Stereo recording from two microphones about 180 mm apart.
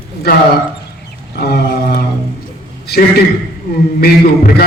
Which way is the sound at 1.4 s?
60° left (ahead or behind).